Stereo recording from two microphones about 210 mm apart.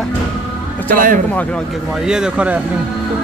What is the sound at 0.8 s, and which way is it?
Speech, 40° right (ahead or behind).